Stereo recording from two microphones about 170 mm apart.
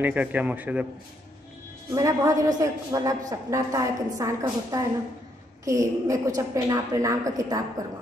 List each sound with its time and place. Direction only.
0.0 s a man's voice: 10° right (ahead or behind)
2.0 s a woman's voice: 20° right (ahead or behind)